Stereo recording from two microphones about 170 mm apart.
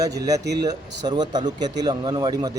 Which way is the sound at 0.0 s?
20° right (ahead or behind).